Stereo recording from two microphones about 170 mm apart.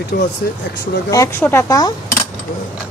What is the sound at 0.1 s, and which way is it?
Speech, 65° left (ahead or behind).